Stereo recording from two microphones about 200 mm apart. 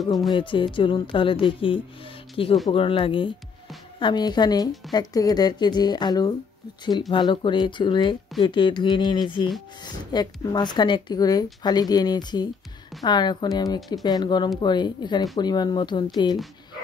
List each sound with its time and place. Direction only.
0.3 s speech: 25° left (ahead or behind)